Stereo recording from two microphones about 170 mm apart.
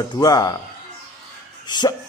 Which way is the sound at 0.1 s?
20° left (ahead or behind).